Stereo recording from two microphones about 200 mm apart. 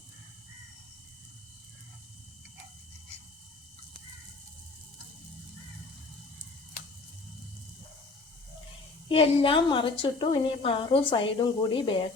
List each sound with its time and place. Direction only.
9.0 s a woman's voice: 25° left (ahead or behind)